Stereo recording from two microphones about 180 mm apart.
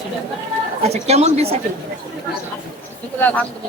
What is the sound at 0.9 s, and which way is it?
Speech, 35° right (ahead or behind).